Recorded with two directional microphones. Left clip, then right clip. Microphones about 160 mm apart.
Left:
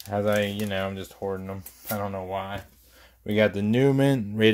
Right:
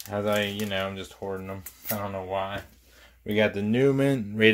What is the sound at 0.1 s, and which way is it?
Speech, 50° left (ahead or behind).